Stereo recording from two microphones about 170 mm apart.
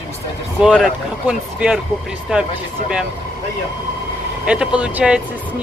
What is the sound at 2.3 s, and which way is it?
Speech, 5° right (ahead or behind).